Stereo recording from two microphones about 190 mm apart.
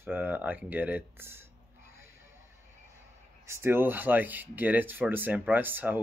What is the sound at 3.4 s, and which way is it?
Speech, 15° right (ahead or behind).